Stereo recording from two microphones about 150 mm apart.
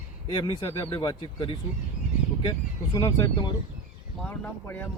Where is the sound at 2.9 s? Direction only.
25° left (ahead or behind).